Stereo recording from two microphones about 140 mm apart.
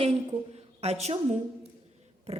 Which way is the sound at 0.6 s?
50° right (ahead or behind).